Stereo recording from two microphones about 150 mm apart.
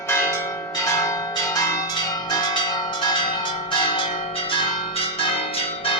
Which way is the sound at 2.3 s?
30° left (ahead or behind).